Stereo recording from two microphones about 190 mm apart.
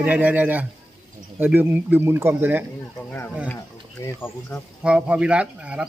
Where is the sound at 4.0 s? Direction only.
15° left (ahead or behind).